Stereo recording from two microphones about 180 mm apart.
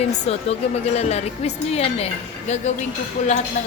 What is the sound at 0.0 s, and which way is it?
A woman's voice, 35° left (ahead or behind).